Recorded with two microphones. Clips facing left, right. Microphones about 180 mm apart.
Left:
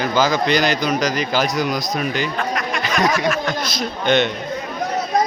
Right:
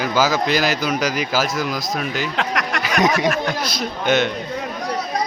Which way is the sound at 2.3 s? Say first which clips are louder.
Even; 80° right.